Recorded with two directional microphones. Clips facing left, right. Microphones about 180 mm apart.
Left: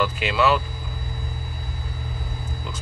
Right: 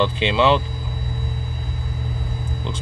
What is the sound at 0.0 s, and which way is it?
Speech, 25° right (ahead or behind).